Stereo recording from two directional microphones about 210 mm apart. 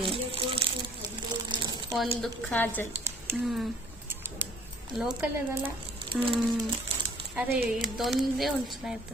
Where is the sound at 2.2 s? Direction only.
5° left (ahead or behind).